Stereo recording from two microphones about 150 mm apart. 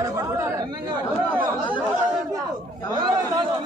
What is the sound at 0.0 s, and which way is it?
Chatter, 25° right (ahead or behind).